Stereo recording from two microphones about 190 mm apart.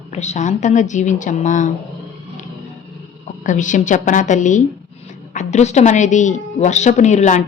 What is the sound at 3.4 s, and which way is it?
A woman's voice, 40° left (ahead or behind).